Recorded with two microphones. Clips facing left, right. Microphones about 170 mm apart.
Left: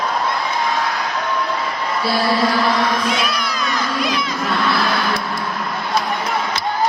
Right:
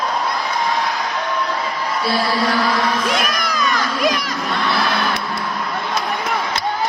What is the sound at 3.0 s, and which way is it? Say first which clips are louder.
Cat: even; 45° right (ahead or behind).